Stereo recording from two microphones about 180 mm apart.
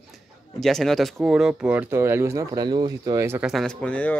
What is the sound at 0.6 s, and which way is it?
Speech, centre (ahead or behind).